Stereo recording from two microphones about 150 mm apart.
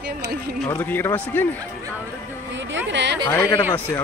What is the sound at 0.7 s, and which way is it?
Speech, 15° left (ahead or behind).